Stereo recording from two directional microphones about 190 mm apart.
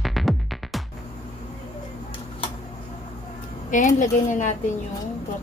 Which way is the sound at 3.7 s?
40° left (ahead or behind).